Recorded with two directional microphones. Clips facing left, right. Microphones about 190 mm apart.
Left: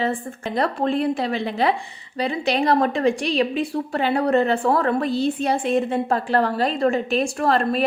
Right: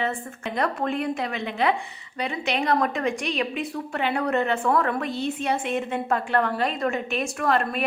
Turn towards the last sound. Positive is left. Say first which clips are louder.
# left 4 dB
turn(degrees=35)  # may be behind; listen again after turning